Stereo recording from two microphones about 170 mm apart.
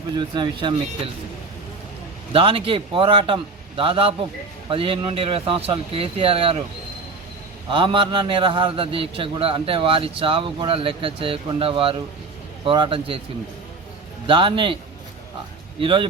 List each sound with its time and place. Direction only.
0.2 s speech: 25° right (ahead or behind)
2.3 s a man's voice: 30° right (ahead or behind)
7.7 s a man's voice: 30° right (ahead or behind)
14.3 s a man's voice: 30° right (ahead or behind)
15.8 s speech: 30° right (ahead or behind)